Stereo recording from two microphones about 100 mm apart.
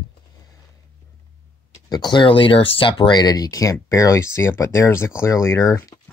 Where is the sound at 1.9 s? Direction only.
50° left (ahead or behind).